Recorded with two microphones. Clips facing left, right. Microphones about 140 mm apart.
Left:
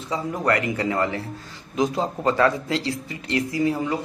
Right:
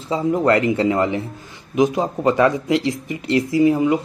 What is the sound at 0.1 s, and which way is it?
Speech, 25° right (ahead or behind).